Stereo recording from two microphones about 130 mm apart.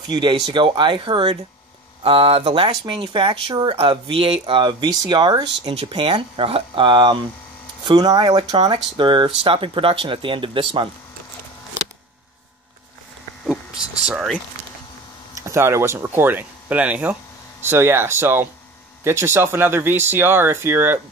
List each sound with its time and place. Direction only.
0.1 s speech: 35° right (ahead or behind)
13.5 s vehicle: 5° right (ahead or behind)
15.4 s speech: 20° right (ahead or behind)